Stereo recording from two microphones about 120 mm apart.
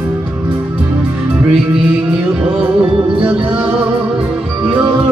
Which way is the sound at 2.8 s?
45° right (ahead or behind).